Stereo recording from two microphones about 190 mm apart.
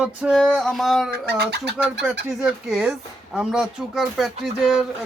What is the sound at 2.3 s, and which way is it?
Speech, centre (ahead or behind).